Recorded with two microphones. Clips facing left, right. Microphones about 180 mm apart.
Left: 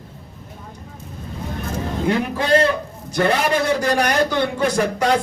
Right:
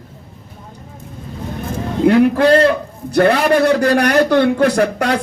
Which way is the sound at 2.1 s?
60° right (ahead or behind).